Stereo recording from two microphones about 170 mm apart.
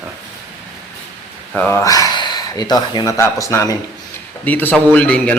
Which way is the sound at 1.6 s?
10° left (ahead or behind).